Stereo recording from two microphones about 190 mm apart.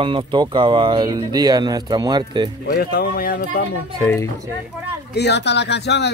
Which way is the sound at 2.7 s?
55° left (ahead or behind).